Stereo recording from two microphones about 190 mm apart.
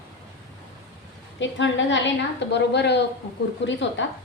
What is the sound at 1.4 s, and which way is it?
A woman's voice, 75° left (ahead or behind).